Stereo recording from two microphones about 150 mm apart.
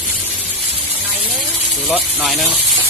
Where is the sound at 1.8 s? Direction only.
Centre (ahead or behind).